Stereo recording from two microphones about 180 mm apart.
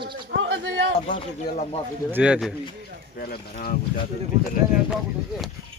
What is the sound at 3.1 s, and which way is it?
Speech, 55° left (ahead or behind).